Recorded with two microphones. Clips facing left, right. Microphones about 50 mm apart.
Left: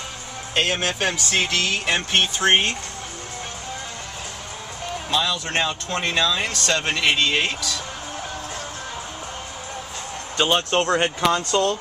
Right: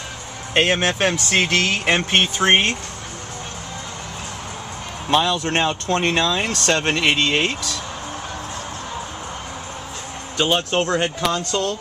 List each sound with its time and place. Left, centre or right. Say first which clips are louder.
0.6 s speech: right 4 dB; right
5.1 s speech: right 5 dB; right
6.9 s speech: even; right
10.3 s speech: even; centre
10.9 s speech: left 1 dB; centre